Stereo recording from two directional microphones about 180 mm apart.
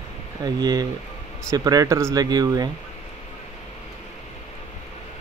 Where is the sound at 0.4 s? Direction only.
20° right (ahead or behind).